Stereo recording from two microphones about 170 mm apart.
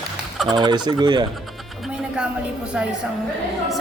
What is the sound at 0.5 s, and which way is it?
Speech, 25° right (ahead or behind).